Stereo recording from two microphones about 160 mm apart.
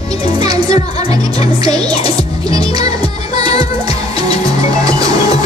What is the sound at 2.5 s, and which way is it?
Music, 25° right (ahead or behind).